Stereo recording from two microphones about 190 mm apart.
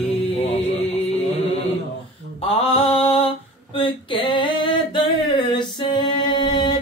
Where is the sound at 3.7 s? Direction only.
25° left (ahead or behind).